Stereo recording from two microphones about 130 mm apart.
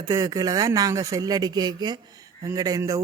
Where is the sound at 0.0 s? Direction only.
30° right (ahead or behind).